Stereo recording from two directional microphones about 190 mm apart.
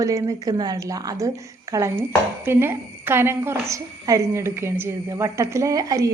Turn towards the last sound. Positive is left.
turn(degrees=-20)  # may be behind; listen again after turning